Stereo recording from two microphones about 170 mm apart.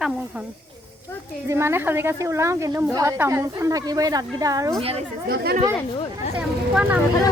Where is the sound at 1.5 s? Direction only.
15° right (ahead or behind).